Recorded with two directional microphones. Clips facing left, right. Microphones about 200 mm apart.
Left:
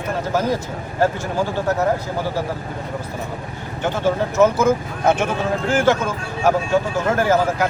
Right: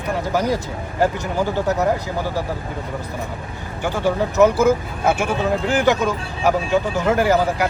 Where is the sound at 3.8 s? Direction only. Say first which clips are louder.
Even; 15° right (ahead or behind).